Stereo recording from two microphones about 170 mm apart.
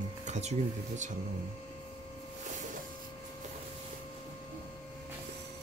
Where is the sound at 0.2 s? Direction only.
40° right (ahead or behind).